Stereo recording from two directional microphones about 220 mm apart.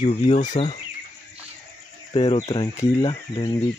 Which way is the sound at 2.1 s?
30° left (ahead or behind).